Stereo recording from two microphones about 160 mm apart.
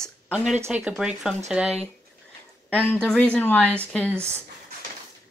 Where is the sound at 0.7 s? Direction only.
5° right (ahead or behind).